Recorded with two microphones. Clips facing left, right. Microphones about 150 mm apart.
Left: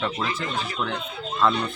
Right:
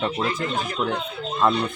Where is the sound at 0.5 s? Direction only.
45° right (ahead or behind).